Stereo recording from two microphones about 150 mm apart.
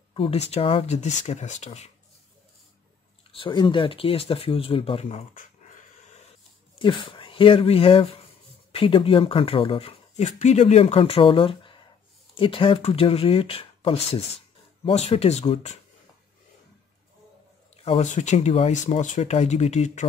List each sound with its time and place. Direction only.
0.1 s speech: 40° left (ahead or behind)
3.3 s speech: 35° left (ahead or behind)
5.3 s dog: 60° left (ahead or behind)
6.8 s speech: 35° left (ahead or behind)
17.8 s speech: 50° left (ahead or behind)